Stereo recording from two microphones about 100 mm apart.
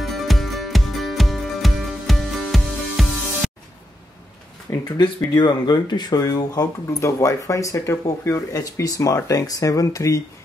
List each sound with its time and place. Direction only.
0.0 s music: centre (ahead or behind)
4.9 s speech: 45° left (ahead or behind)